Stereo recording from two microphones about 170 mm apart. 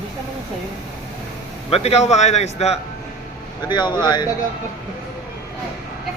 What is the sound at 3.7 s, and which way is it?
Speech, 25° left (ahead or behind).